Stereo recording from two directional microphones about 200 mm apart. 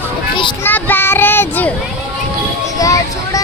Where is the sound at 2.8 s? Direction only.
15° left (ahead or behind).